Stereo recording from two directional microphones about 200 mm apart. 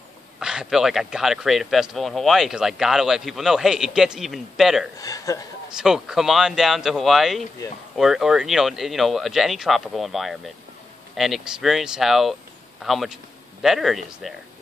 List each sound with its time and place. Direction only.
0.4 s speech: 5° right (ahead or behind)
4.9 s a man's voice: 15° left (ahead or behind)
5.8 s speech: 5° right (ahead or behind)